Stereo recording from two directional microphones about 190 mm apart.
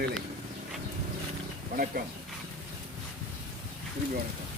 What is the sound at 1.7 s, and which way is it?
Speech, 50° right (ahead or behind).